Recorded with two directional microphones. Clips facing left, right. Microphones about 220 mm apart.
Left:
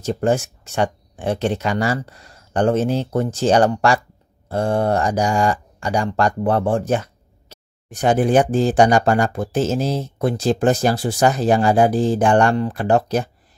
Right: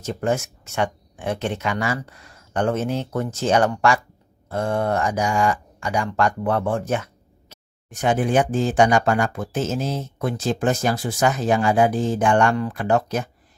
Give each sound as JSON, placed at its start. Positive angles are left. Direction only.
{"t": 0.0, "sound": "speech", "side_deg": 35}